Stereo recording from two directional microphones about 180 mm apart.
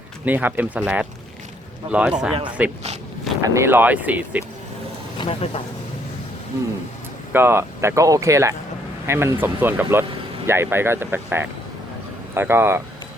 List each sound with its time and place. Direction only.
0.3 s speech: 10° right (ahead or behind)
5.1 s speech: 30° left (ahead or behind)
7.3 s speech: 15° right (ahead or behind)